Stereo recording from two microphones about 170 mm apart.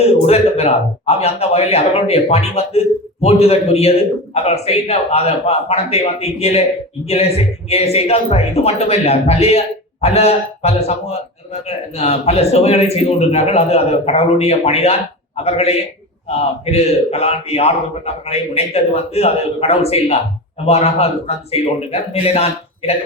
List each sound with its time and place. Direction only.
0.0 s a man's voice: 35° left (ahead or behind)
16.7 s a man's voice: 40° left (ahead or behind)